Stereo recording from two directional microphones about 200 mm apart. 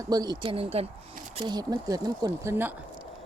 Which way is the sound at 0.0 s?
20° right (ahead or behind).